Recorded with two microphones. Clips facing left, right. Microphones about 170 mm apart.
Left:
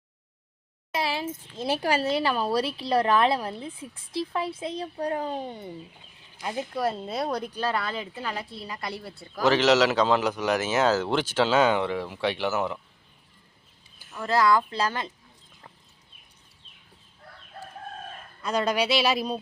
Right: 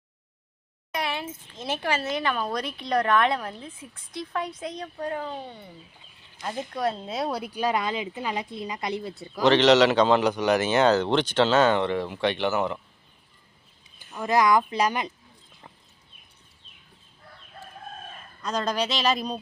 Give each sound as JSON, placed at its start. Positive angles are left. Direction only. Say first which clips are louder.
{"t": 0.9, "sound": "a child's voice", "louder": "left 2 dB", "side_deg": 30}
{"t": 5.5, "sound": "speech", "louder": "left 5 dB", "side_deg": 20}
{"t": 6.4, "sound": "speech", "louder": "even", "side_deg": 5}
{"t": 9.4, "sound": "a man's voice", "louder": "right 3 dB", "side_deg": 5}
{"t": 14.2, "sound": "speech", "louder": "right 1 dB", "side_deg": -15}
{"t": 18.4, "sound": "speech", "louder": "left 2 dB", "side_deg": 10}